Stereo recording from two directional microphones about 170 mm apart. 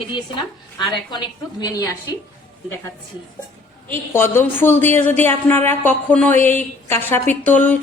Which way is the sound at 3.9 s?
15° left (ahead or behind).